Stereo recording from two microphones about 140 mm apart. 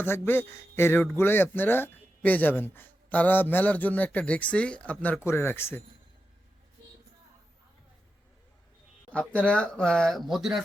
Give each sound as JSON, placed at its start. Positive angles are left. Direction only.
{"t": 0.0, "sound": "a man's voice", "side_deg": 15}
{"t": 9.5, "sound": "speech", "side_deg": 5}